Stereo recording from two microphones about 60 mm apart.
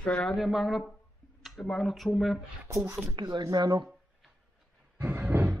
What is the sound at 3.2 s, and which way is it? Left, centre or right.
Speech, right.